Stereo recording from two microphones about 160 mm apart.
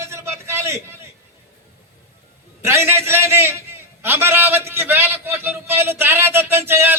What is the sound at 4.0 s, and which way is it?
A man's voice, 15° right (ahead or behind).